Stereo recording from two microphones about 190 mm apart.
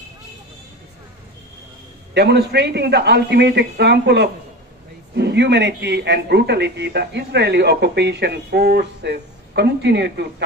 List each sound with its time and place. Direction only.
2.1 s speech: 60° right (ahead or behind)